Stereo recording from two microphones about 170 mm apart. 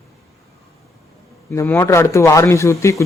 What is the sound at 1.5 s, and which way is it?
Speech, 15° left (ahead or behind).